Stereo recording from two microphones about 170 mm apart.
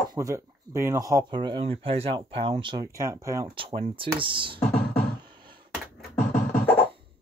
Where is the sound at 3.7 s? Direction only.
30° right (ahead or behind).